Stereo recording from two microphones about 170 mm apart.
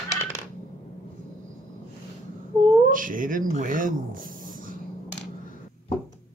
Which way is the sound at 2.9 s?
50° right (ahead or behind).